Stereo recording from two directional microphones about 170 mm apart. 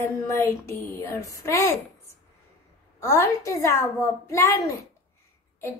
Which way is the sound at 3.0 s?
20° left (ahead or behind).